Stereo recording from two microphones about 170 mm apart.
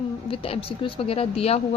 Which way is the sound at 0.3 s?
35° left (ahead or behind).